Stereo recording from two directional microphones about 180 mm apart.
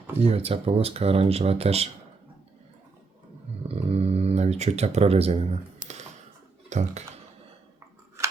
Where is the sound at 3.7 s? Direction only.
35° right (ahead or behind).